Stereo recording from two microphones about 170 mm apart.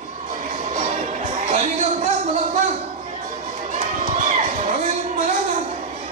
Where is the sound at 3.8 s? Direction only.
45° right (ahead or behind).